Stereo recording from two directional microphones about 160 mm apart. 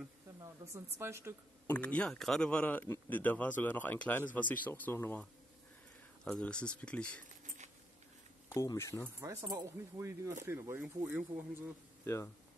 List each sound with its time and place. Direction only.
0.9 s speech: 15° right (ahead or behind)
1.7 s speech: 10° left (ahead or behind)
7.2 s keys jangling: 50° right (ahead or behind)
8.5 s speech: 20° left (ahead or behind)
9.2 s speech: 20° right (ahead or behind)